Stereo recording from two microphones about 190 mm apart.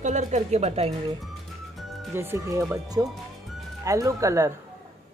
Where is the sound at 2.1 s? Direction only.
15° right (ahead or behind).